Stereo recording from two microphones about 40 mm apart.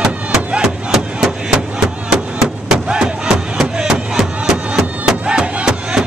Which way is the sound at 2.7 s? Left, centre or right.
Right.